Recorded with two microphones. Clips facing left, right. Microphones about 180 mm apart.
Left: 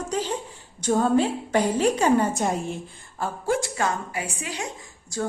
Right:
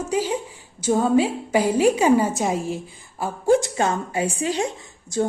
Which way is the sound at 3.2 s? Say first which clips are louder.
Right 7 dB; 15° right (ahead or behind).